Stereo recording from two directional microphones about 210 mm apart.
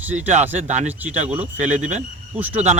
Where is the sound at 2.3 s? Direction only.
10° right (ahead or behind).